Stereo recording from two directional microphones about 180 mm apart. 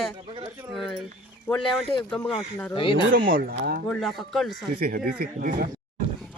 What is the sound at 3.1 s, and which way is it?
Speech, 50° right (ahead or behind).